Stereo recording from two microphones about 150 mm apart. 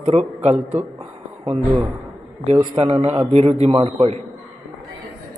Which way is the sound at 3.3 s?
45° right (ahead or behind).